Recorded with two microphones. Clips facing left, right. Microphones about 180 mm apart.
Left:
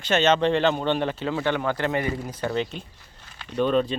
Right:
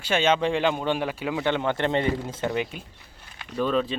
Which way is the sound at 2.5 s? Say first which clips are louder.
Left 3 dB; 10° right (ahead or behind).